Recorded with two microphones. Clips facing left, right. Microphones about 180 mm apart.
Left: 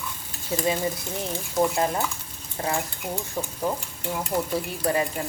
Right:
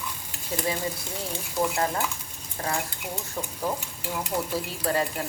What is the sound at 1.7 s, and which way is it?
Speech, 20° left (ahead or behind).